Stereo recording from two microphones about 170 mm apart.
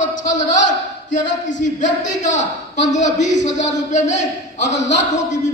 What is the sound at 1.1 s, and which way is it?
Speech, 50° left (ahead or behind).